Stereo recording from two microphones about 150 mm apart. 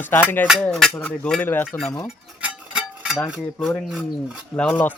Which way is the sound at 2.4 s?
5° right (ahead or behind).